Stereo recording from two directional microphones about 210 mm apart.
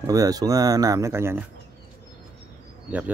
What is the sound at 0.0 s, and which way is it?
Speech, 15° right (ahead or behind).